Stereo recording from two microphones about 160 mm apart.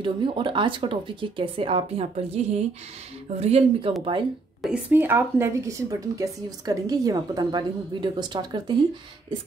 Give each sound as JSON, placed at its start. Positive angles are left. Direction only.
{"t": 0.0, "sound": "speech", "side_deg": -30}
{"t": 4.6, "sound": "a woman's voice", "side_deg": -5}